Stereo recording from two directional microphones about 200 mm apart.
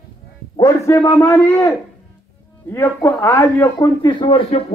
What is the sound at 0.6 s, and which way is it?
A man's voice, 15° left (ahead or behind).